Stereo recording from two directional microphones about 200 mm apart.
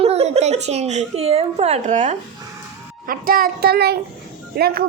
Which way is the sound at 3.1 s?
45° right (ahead or behind).